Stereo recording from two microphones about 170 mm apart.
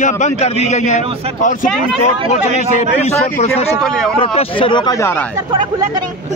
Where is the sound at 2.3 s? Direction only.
40° left (ahead or behind).